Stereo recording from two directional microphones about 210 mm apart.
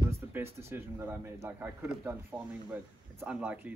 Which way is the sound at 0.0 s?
10° right (ahead or behind).